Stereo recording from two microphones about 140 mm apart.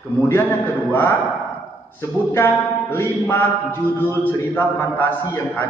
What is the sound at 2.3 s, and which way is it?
Speech, 15° left (ahead or behind).